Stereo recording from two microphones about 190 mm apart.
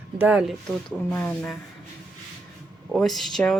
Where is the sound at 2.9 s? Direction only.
Centre (ahead or behind).